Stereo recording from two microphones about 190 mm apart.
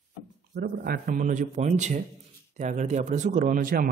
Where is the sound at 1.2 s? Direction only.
40° right (ahead or behind).